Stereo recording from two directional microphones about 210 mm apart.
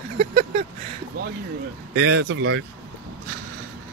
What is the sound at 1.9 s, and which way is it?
Speech, 55° right (ahead or behind).